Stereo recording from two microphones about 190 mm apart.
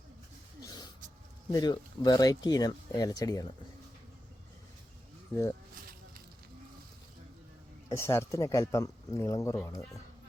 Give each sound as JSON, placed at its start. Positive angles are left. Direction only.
{"t": 0.6, "sound": "a sound", "side_deg": 20}
{"t": 1.5, "sound": "speech", "side_deg": 20}
{"t": 5.3, "sound": "speech", "side_deg": 15}
{"t": 7.9, "sound": "speech", "side_deg": 15}